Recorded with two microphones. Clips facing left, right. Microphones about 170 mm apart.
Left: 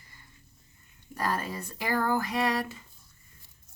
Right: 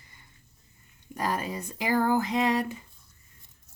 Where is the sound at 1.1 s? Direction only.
15° right (ahead or behind).